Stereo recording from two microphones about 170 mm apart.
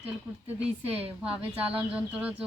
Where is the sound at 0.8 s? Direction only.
35° right (ahead or behind).